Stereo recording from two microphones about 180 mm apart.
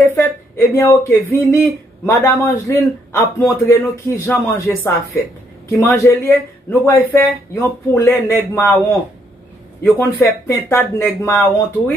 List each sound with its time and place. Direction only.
0.6 s a man's voice: 15° left (ahead or behind)
9.9 s a man's voice: 15° left (ahead or behind)